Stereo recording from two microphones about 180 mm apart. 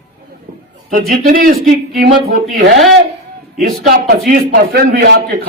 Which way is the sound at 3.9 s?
50° right (ahead or behind).